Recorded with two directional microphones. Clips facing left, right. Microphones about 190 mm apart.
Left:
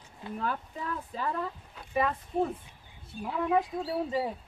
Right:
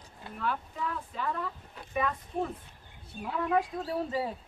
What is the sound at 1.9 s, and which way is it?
Speech, 30° left (ahead or behind).